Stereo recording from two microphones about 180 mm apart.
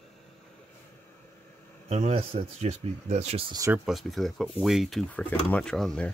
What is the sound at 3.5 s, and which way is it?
Speech, 15° right (ahead or behind).